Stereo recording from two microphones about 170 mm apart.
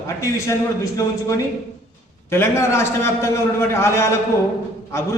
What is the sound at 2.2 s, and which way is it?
A man's voice, 15° left (ahead or behind).